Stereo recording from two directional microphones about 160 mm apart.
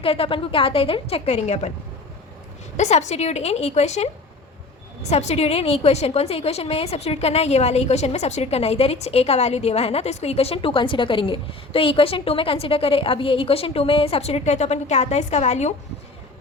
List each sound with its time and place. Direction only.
0.0 s a woman's voice: 35° left (ahead or behind)
2.7 s a woman's voice: 45° left (ahead or behind)